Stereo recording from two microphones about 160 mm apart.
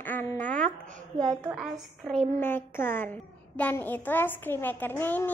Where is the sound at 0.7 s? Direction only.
50° right (ahead or behind).